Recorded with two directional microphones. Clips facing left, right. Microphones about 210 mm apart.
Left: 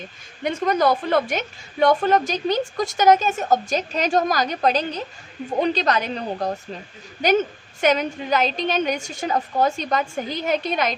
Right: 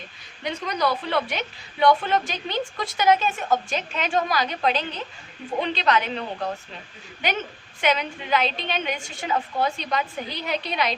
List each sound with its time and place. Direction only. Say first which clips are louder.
0.4 s a woman's voice: left 6 dB; 50° left (ahead or behind)